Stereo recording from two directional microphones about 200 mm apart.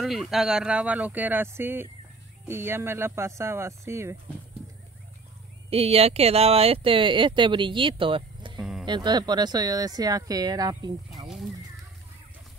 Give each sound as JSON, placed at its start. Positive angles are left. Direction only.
{"t": 0.0, "sound": "speech", "side_deg": 0}
{"t": 5.7, "sound": "speech", "side_deg": -30}
{"t": 8.5, "sound": "a sound", "side_deg": 0}
{"t": 8.8, "sound": "speech", "side_deg": -20}